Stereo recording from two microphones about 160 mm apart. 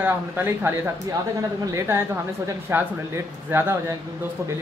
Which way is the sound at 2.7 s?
15° right (ahead or behind).